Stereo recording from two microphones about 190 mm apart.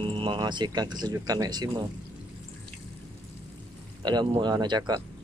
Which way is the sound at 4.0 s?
25° right (ahead or behind).